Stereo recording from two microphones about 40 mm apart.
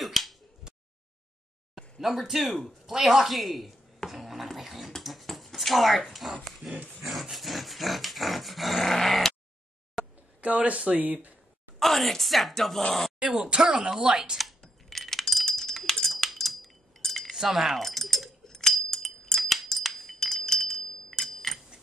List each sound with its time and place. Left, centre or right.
0.0 s a sound: centre
2.0 s a woman's voice: centre
5.0 s a sound: centre
6.4 s dog: centre
10.4 s speech: right
11.8 s a woman's voice: centre
13.2 s speech: centre
14.9 s typing: centre
17.0 s cutlery: centre
17.3 s keys jangling: centre
19.4 s a sound: centre